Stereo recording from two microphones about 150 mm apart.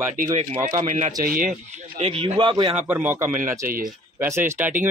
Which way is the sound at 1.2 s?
70° right (ahead or behind).